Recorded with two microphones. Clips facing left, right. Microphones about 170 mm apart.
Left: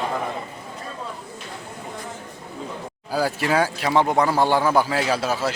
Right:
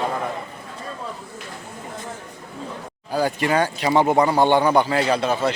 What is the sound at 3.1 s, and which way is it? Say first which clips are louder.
Speech: right 1 dB; 5° left (ahead or behind).